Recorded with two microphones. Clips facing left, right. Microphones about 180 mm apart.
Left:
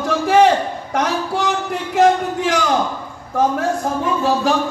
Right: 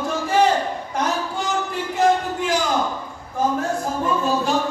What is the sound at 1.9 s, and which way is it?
Music, 90° left.